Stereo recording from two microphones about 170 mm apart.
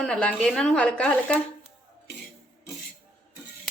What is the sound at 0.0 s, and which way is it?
A woman's voice, 5° left (ahead or behind).